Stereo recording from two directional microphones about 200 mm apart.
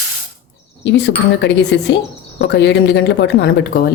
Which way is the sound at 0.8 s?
60° left (ahead or behind).